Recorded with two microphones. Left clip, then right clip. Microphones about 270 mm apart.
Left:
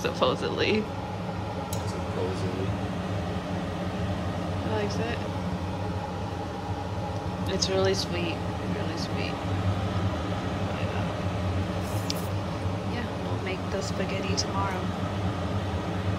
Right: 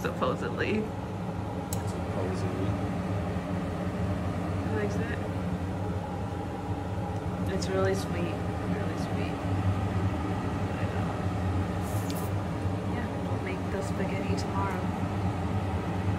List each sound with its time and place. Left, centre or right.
0.0 s speech: centre
7.5 s speech: centre